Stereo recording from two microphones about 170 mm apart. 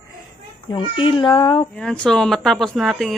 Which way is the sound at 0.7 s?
30° left (ahead or behind).